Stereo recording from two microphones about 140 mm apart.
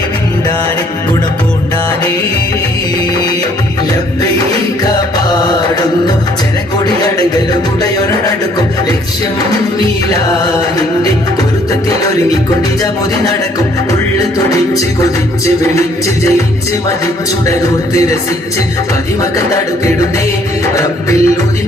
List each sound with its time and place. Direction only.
4.8 s music: 30° left (ahead or behind)
6.8 s music: 30° left (ahead or behind)
14.2 s music: 25° left (ahead or behind)
17.4 s music: 20° left (ahead or behind)
20.7 s music: 25° left (ahead or behind)